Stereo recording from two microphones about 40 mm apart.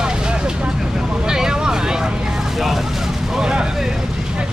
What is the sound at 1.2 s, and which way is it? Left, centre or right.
Speech, centre.